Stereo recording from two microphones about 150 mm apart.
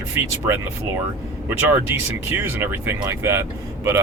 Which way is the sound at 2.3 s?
15° right (ahead or behind).